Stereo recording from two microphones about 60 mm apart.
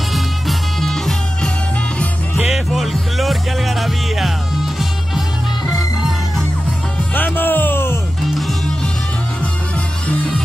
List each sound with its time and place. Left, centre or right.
0.1 s music: centre
7.2 s music: left